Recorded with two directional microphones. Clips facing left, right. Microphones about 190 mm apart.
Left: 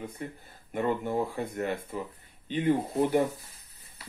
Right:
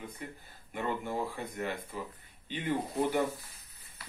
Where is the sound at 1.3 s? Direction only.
45° left (ahead or behind).